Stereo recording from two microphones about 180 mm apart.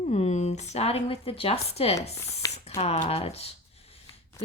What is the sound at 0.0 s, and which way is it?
Speech, 35° left (ahead or behind).